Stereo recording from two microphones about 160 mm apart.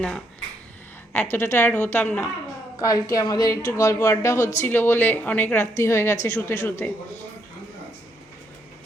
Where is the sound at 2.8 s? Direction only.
25° left (ahead or behind).